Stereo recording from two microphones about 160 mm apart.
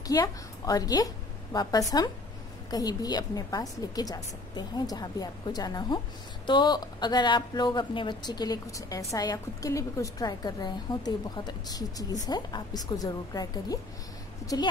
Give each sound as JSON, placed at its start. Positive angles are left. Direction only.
{"t": 0.0, "sound": "a woman's voice", "side_deg": 25}